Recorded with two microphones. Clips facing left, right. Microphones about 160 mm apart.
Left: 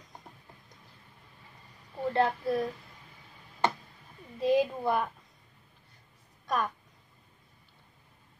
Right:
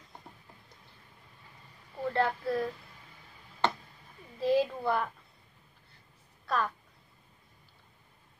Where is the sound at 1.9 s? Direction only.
20° left (ahead or behind).